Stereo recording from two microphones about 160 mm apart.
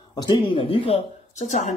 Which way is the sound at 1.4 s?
45° left (ahead or behind).